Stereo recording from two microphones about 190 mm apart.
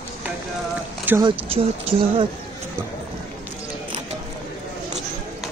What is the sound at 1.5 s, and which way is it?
Speech, 30° right (ahead or behind).